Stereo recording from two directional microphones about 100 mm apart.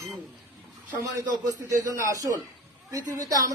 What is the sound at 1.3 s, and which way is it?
A man's voice, 40° right (ahead or behind).